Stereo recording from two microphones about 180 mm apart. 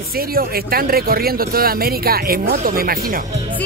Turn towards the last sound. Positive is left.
turn(degrees=-55)  # may be behind; listen again after turning